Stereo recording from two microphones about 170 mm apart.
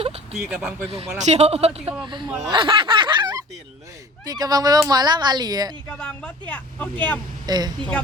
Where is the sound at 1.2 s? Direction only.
40° right (ahead or behind).